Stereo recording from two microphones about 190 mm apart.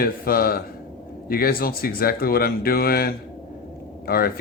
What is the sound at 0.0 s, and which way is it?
Speech, 50° left (ahead or behind).